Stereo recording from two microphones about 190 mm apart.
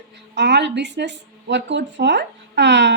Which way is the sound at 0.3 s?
65° right (ahead or behind).